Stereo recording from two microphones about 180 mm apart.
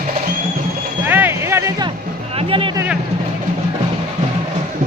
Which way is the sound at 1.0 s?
10° right (ahead or behind).